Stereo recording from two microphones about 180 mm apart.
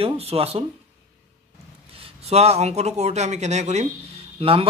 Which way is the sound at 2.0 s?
35° right (ahead or behind).